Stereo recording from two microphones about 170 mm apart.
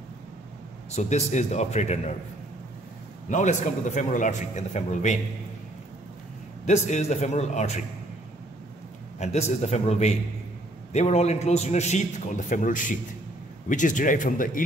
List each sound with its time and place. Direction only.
0.9 s a man's voice: 40° left (ahead or behind)
3.3 s a man's voice: 45° left (ahead or behind)
6.6 s a man's voice: 40° left (ahead or behind)
9.2 s a man's voice: 40° left (ahead or behind)